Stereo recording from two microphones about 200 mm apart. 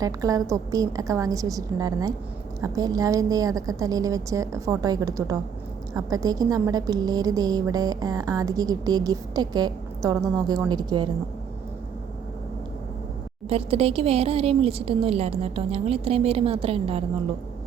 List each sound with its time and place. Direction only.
0.0 s a woman's voice: 15° right (ahead or behind)
13.5 s a woman's voice: 30° right (ahead or behind)